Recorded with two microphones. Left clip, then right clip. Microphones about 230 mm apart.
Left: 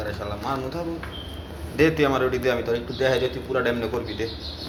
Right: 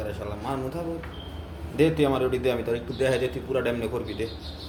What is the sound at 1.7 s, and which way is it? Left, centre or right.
A man's voice, centre.